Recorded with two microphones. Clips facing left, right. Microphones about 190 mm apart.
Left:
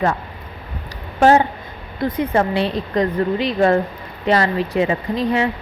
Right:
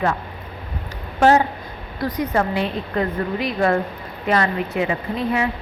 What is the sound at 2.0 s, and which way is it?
A woman's voice, 25° left (ahead or behind).